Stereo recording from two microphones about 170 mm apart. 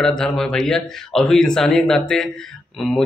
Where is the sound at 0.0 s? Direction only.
5° left (ahead or behind).